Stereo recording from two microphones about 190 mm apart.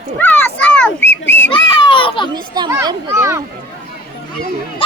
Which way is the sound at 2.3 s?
20° right (ahead or behind).